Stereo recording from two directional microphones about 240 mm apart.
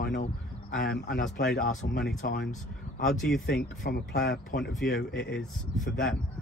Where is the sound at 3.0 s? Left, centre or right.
Centre.